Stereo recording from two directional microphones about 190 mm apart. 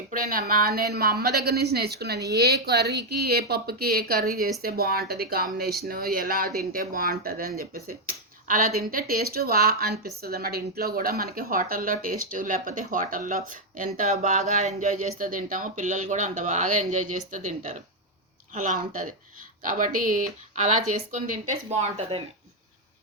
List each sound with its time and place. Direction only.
0.1 s a woman's voice: 45° right (ahead or behind)